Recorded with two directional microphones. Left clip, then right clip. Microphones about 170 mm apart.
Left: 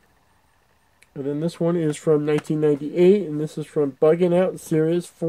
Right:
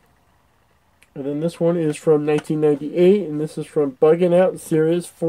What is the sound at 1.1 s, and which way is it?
Speech, 20° left (ahead or behind).